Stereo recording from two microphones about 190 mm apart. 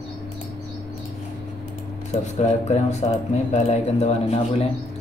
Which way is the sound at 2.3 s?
35° left (ahead or behind).